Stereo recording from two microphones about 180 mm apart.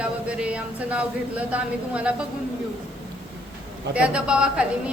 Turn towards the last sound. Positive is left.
turn(degrees=-5)  # may be behind; listen again after turning